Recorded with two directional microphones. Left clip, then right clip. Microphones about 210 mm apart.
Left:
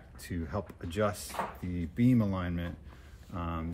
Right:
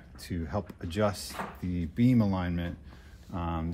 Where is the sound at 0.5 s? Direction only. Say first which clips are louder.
Right 3 dB; 20° right (ahead or behind).